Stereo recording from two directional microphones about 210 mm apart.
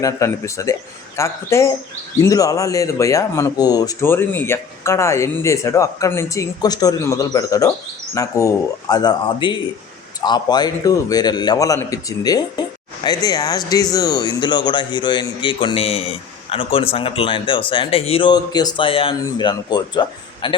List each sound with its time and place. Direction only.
0.0 s speech: 15° left (ahead or behind)